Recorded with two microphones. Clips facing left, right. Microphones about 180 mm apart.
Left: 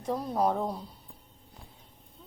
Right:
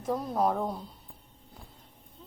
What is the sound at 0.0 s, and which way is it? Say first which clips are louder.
Speech: even; centre (ahead or behind).